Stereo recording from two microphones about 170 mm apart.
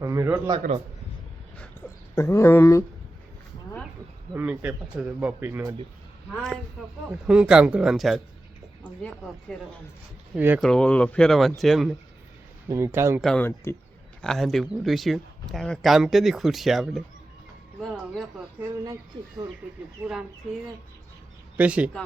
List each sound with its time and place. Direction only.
0.0 s speech: 20° right (ahead or behind)
2.1 s speech: 15° left (ahead or behind)
4.4 s speech: 10° right (ahead or behind)
6.3 s speech: centre (ahead or behind)
10.3 s speech: 10° right (ahead or behind)
10.6 s speech: 5° left (ahead or behind)
12.6 s speech: 15° right (ahead or behind)
13.2 s speech: 10° left (ahead or behind)
20.1 s speech: 5° right (ahead or behind)